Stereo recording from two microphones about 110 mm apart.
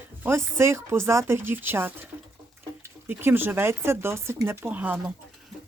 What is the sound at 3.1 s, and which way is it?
Speech, 20° right (ahead or behind).